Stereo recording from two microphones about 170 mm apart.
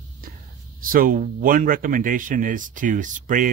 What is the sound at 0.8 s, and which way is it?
Speech, 55° right (ahead or behind).